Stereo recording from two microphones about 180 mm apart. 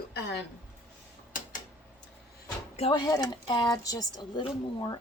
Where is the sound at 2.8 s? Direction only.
30° left (ahead or behind).